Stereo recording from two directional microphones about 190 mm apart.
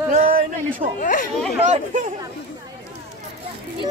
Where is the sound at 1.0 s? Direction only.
45° left (ahead or behind).